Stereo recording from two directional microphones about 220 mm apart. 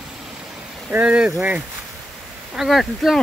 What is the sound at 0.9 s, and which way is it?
Speech, 5° right (ahead or behind).